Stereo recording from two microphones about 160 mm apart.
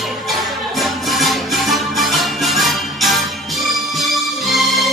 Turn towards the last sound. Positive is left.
turn(degrees=0)  # may be behind; listen again after turning